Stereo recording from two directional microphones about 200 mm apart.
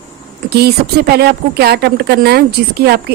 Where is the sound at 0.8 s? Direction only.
50° right (ahead or behind).